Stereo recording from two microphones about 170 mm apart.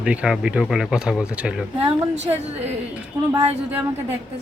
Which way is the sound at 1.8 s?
35° right (ahead or behind).